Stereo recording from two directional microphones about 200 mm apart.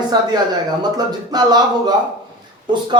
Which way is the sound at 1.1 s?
20° right (ahead or behind).